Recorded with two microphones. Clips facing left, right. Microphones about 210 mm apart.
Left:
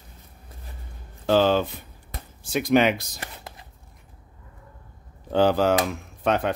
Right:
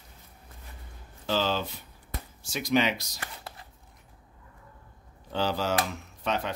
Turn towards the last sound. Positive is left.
turn(degrees=55)  # may be behind; listen again after turning